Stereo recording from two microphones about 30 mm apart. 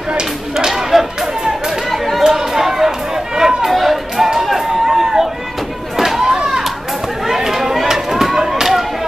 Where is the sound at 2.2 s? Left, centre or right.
Centre.